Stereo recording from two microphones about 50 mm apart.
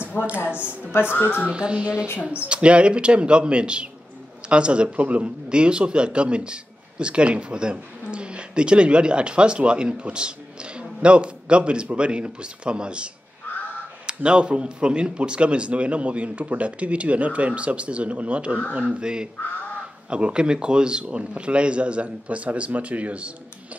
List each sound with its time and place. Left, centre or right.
0.2 s a woman's voice: left
1.5 s a man's voice: right
13.5 s crow: left
14.0 s a man's voice: centre